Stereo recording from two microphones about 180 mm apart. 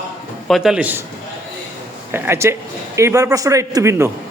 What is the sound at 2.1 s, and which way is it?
A man's voice, 15° right (ahead or behind).